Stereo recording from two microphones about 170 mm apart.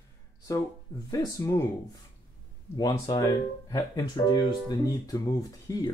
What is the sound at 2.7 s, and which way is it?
Speech, 20° left (ahead or behind).